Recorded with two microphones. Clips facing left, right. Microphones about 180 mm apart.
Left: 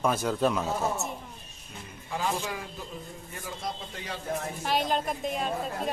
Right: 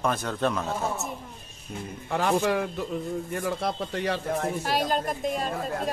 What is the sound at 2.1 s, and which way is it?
A man's voice, 60° right (ahead or behind).